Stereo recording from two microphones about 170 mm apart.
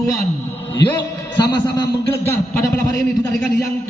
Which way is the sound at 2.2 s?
15° left (ahead or behind).